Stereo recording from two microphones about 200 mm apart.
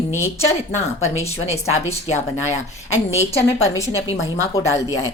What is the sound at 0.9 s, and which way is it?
Speech, 35° left (ahead or behind).